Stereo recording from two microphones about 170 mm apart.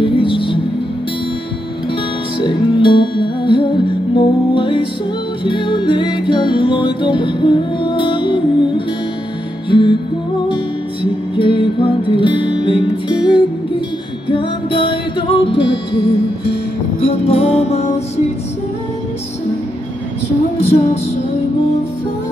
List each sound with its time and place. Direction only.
0.0 s music: 30° left (ahead or behind)
2.3 s music: 30° left (ahead or behind)
11.3 s music: 30° left (ahead or behind)
15.5 s music: 90° left
17.0 s music: 40° left (ahead or behind)
20.7 s music: 40° left (ahead or behind)